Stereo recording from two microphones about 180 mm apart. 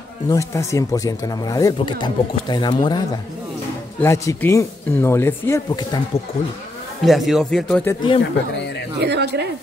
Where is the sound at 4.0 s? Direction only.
15° left (ahead or behind).